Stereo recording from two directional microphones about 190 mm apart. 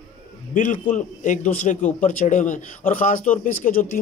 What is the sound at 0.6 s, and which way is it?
Speech, 40° left (ahead or behind).